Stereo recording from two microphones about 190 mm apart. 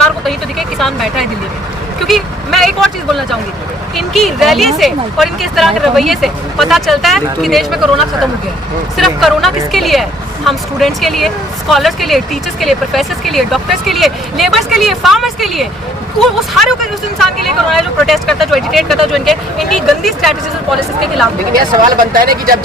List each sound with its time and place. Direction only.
0.8 s speech: centre (ahead or behind)
21.5 s speech: 45° right (ahead or behind)